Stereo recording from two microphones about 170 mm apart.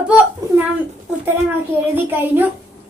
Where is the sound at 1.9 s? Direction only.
10° right (ahead or behind).